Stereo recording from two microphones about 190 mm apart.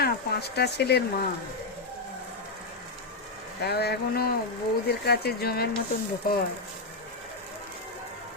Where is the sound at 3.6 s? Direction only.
60° left (ahead or behind).